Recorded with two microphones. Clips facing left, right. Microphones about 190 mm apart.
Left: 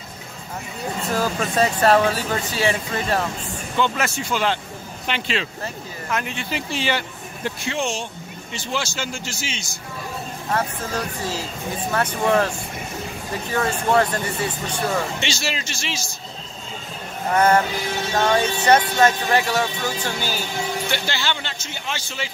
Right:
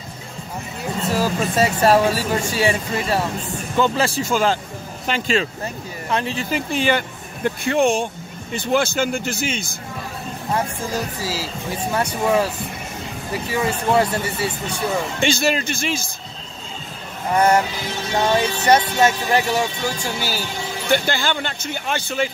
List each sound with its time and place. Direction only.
1.1 s speech: 10° right (ahead or behind)
3.7 s speech: 35° right (ahead or behind)
4.2 s speech: 45° right (ahead or behind)
6.0 s speech: 30° right (ahead or behind)
6.5 s a man's voice: 50° right (ahead or behind)
10.5 s speech: 10° right (ahead or behind)
15.1 s speech: 50° right (ahead or behind)
18.1 s speech: 10° right (ahead or behind)
20.9 s speech: 50° right (ahead or behind)